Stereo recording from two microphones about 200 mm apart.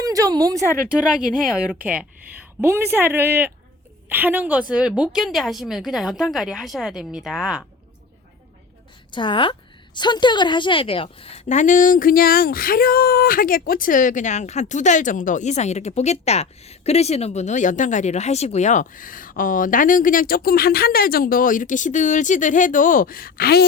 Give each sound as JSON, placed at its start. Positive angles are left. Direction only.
{"t": 0.0, "sound": "speech", "side_deg": -20}
{"t": 0.9, "sound": "a woman's voice", "side_deg": -5}
{"t": 9.1, "sound": "a woman's voice", "side_deg": 25}